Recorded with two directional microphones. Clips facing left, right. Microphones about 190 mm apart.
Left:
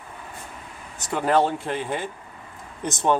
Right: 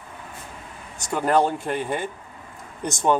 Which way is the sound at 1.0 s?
Centre (ahead or behind).